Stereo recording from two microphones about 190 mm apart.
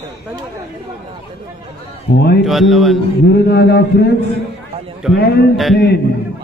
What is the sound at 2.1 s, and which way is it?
Speech, 40° left (ahead or behind).